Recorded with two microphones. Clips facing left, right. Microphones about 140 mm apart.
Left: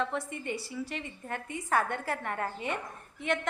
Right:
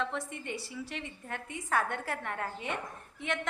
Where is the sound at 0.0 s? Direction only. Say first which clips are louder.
Left 3 dB; centre (ahead or behind).